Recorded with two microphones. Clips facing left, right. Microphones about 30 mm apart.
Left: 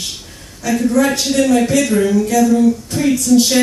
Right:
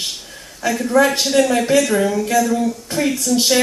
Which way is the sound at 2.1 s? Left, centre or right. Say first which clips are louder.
Left 3 dB; centre.